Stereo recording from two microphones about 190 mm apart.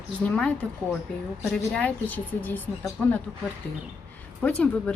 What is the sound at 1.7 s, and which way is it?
A woman's voice, 10° left (ahead or behind).